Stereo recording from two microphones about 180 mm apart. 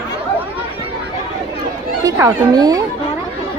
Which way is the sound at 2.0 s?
20° right (ahead or behind).